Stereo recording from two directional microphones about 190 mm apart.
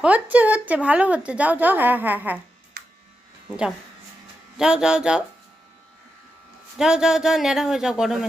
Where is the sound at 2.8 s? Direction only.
50° right (ahead or behind).